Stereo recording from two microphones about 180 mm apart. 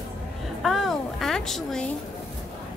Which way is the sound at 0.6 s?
Centre (ahead or behind).